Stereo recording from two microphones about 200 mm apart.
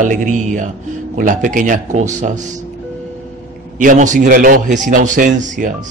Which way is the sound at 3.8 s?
40° right (ahead or behind).